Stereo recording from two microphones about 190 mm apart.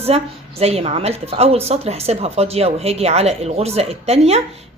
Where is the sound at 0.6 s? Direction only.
30° right (ahead or behind).